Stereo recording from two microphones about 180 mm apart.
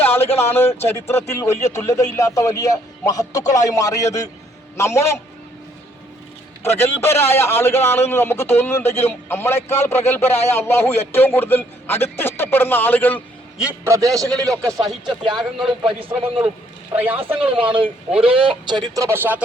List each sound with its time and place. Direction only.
0.0 s a sound: 10° left (ahead or behind)
0.5 s a man's voice: 15° left (ahead or behind)
6.6 s a man's voice: 15° left (ahead or behind)
13.6 s a man's voice: 10° right (ahead or behind)
14.6 s speech: 5° left (ahead or behind)
15.0 s speech: 25° right (ahead or behind)
15.5 s speech: centre (ahead or behind)
17.0 s a man's voice: 10° right (ahead or behind)
17.3 s speech: 30° right (ahead or behind)
18.9 s a man's voice: 15° right (ahead or behind)